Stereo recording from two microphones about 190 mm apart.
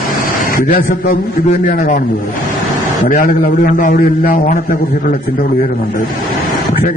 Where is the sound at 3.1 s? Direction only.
45° left (ahead or behind).